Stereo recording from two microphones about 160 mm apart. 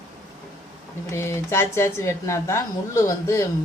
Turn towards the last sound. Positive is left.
turn(degrees=20)  # may be behind; listen again after turning